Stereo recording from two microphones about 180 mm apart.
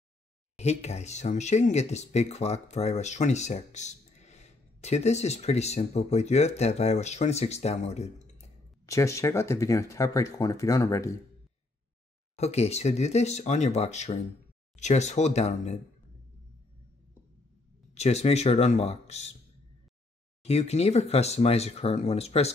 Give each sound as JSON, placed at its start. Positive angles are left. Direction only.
{"t": 0.6, "sound": "speech", "side_deg": 35}
{"t": 8.8, "sound": "speech", "side_deg": 15}
{"t": 12.4, "sound": "speech", "side_deg": 35}
{"t": 17.9, "sound": "speech", "side_deg": 35}
{"t": 20.4, "sound": "speech", "side_deg": 35}